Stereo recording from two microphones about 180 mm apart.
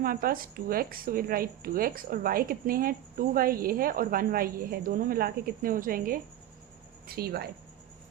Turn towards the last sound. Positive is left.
turn(degrees=-55)  # may be behind; listen again after turning